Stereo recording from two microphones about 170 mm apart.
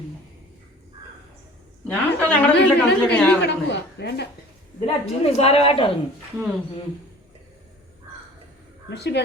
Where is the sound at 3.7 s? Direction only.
85° left.